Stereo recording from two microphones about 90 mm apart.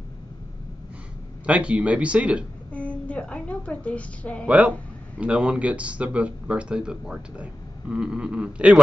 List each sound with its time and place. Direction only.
1.4 s speech: 15° right (ahead or behind)
2.7 s a woman's voice: 15° left (ahead or behind)
4.5 s speech: 15° right (ahead or behind)